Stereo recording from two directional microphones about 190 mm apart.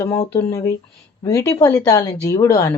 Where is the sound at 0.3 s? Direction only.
15° left (ahead or behind).